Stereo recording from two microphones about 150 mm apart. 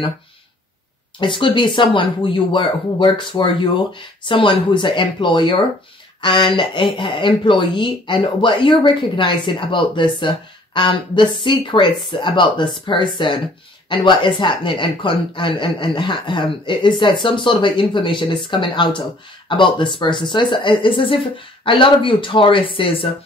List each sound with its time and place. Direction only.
1.2 s speech: 35° left (ahead or behind)